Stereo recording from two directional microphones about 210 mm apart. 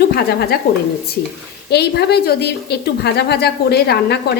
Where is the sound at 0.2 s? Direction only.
50° left (ahead or behind).